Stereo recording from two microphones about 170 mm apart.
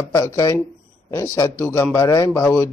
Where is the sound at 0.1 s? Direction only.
20° left (ahead or behind).